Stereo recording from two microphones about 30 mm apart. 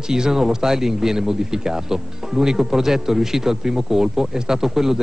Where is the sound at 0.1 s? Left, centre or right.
Centre.